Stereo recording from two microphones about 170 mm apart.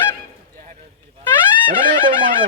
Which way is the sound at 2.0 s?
50° right (ahead or behind).